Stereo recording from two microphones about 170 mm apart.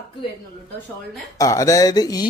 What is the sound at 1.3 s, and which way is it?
Speech, 20° left (ahead or behind).